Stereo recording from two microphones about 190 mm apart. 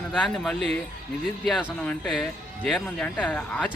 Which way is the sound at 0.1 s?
Centre (ahead or behind).